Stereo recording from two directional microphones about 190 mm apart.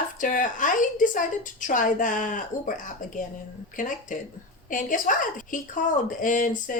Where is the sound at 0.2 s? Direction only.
45° left (ahead or behind).